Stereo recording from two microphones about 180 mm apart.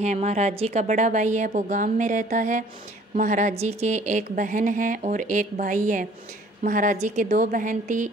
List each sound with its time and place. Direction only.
0.0 s speech: 40° right (ahead or behind)